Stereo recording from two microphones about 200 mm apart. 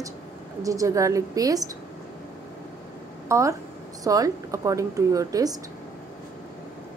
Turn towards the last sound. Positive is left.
turn(degrees=-15)  # may be behind; listen again after turning